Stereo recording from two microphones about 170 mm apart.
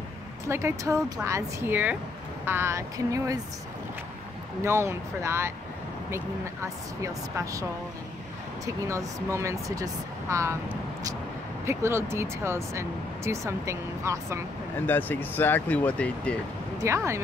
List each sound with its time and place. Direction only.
0.5 s speech: 15° right (ahead or behind)
4.6 s speech: 15° right (ahead or behind)
8.8 s speech: 15° right (ahead or behind)
11.6 s speech: 15° right (ahead or behind)
14.9 s speech: 10° left (ahead or behind)
16.7 s speech: 15° right (ahead or behind)